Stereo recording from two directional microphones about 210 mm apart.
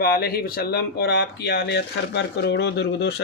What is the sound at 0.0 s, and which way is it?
Speech, 45° left (ahead or behind).